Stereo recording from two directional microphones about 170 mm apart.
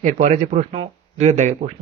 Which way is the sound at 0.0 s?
45° right (ahead or behind).